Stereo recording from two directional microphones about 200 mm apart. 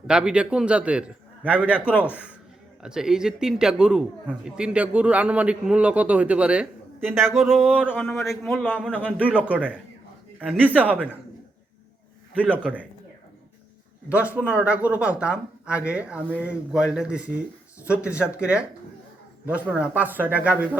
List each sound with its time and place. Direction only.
0.1 s speech: 5° right (ahead or behind)
7.5 s speech: 5° left (ahead or behind)
8.2 s speech: centre (ahead or behind)
9.0 s speech: 5° right (ahead or behind)
12.3 s speech: 5° right (ahead or behind)
14.1 s speech: 5° right (ahead or behind)
19.7 s speech: 5° right (ahead or behind)